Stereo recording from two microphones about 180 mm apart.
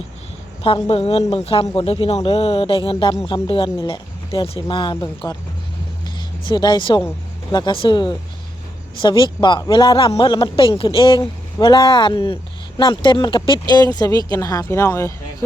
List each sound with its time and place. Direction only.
0.9 s speech: 30° left (ahead or behind); by 15.1 s 15° left (ahead or behind)